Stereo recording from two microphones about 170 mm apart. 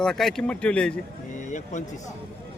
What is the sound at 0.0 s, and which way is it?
Speech, centre (ahead or behind).